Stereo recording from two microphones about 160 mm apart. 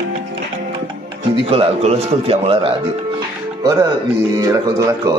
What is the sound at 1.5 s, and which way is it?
A man's voice, 40° right (ahead or behind).